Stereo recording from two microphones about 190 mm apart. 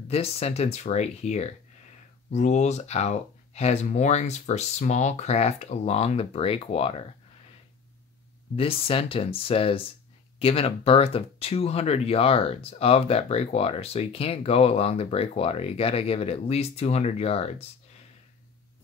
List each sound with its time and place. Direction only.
0.1 s speech: 30° left (ahead or behind)
8.5 s speech: 30° left (ahead or behind)